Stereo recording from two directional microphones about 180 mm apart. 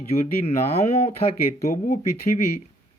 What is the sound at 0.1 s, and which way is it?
Speech, 35° left (ahead or behind).